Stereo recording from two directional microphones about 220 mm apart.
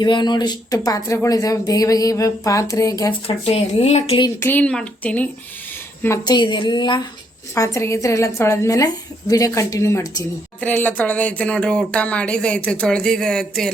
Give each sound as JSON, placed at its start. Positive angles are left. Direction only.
{"t": 0.0, "sound": "speech", "side_deg": 20}
{"t": 4.4, "sound": "a woman's voice", "side_deg": 5}